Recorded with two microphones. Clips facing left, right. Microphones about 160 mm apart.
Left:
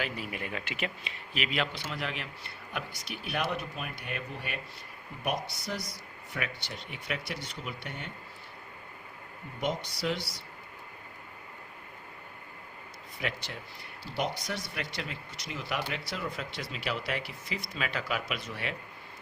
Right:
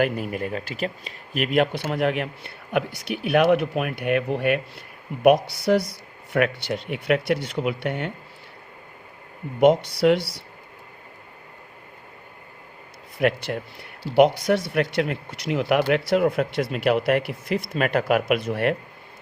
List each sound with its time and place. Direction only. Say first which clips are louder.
0.0 s speech: right 12 dB; 50° right (ahead or behind); by 8.1 s 65° right (ahead or behind)
9.6 s speech: right 16 dB; 65° right (ahead or behind)
13.1 s speech: right 15 dB; 60° right (ahead or behind)